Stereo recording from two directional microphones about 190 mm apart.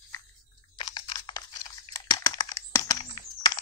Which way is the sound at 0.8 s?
25° left (ahead or behind).